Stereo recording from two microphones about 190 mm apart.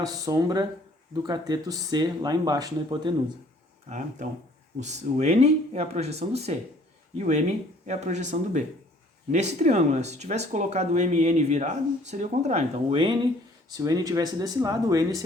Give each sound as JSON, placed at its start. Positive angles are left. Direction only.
{"t": 0.3, "sound": "speech", "side_deg": -20}
{"t": 3.8, "sound": "speech", "side_deg": -40}